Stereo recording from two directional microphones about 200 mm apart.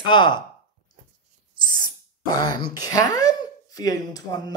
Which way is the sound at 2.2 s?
20° left (ahead or behind).